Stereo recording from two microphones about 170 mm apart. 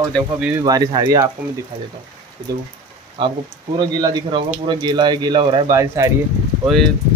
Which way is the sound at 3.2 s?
30° right (ahead or behind).